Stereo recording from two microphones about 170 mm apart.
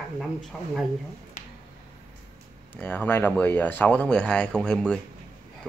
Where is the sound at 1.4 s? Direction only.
50° left (ahead or behind).